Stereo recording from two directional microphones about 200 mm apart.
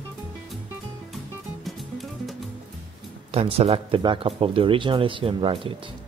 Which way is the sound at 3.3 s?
30° right (ahead or behind).